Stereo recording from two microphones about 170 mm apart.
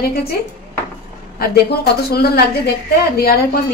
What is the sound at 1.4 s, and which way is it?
A woman's voice, 65° left (ahead or behind).